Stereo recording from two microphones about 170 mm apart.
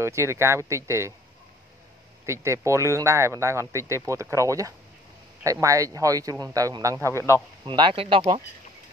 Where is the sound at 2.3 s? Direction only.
15° right (ahead or behind).